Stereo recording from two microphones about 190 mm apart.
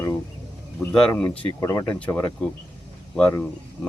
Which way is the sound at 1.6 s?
20° left (ahead or behind).